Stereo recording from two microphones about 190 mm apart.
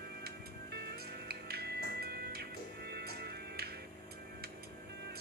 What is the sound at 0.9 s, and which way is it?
Music, 55° right (ahead or behind).